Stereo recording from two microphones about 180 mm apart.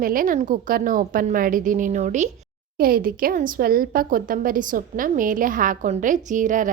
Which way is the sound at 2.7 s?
55° right (ahead or behind).